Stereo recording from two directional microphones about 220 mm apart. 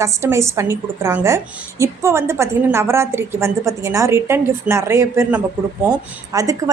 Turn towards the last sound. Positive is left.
turn(degrees=-15)  # may be behind; listen again after turning